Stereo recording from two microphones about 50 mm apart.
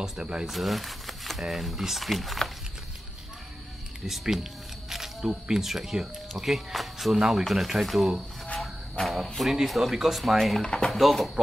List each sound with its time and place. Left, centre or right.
0.2 s speech: right
0.5 s speech: centre
4.0 s speech: centre
10.6 s speech: centre
10.9 s speech: centre